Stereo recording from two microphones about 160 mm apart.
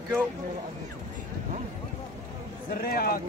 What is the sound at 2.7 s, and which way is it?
Speech, 70° left (ahead or behind).